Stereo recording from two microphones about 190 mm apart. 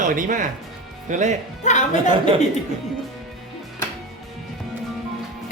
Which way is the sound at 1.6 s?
40° left (ahead or behind).